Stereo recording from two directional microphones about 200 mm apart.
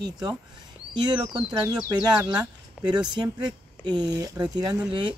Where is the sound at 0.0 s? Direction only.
20° right (ahead or behind).